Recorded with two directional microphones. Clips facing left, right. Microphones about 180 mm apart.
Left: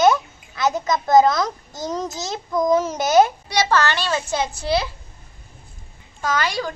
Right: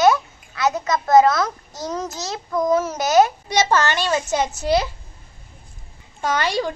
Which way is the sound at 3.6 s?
15° right (ahead or behind).